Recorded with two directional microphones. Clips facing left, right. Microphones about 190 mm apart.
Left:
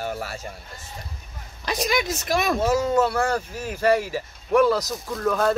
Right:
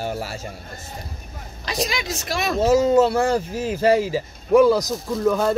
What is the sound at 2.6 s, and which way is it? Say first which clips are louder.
Speech: right 8 dB; 25° right (ahead or behind).